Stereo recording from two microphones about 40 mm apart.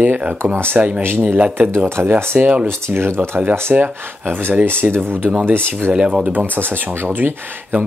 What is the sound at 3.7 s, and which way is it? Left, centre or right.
Speech, right.